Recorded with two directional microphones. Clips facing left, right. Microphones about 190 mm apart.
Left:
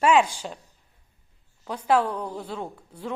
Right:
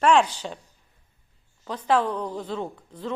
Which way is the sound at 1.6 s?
10° left (ahead or behind).